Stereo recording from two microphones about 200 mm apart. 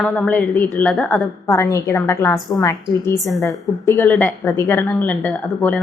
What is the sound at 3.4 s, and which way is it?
A woman's voice, 10° left (ahead or behind).